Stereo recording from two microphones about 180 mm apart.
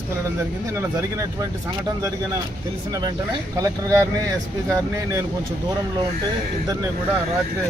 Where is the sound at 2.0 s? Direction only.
20° right (ahead or behind).